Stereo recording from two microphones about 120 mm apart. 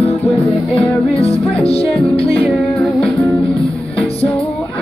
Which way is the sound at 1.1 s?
55° left (ahead or behind).